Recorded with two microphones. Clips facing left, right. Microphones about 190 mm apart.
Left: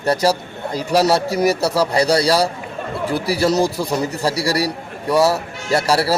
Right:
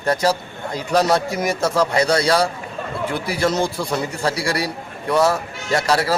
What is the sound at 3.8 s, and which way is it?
Speech, 10° left (ahead or behind).